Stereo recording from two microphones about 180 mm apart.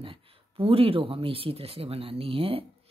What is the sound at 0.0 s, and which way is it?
Speech, 30° right (ahead or behind).